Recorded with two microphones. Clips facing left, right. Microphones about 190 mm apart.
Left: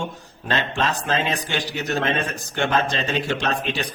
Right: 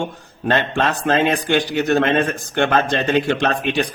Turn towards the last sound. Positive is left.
turn(degrees=-55)  # may be behind; listen again after turning